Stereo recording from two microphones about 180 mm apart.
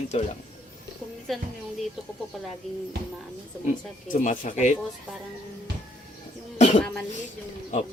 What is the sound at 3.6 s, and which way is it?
Speech, 45° left (ahead or behind).